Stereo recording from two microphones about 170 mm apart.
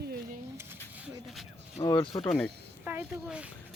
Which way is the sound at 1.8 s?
30° left (ahead or behind).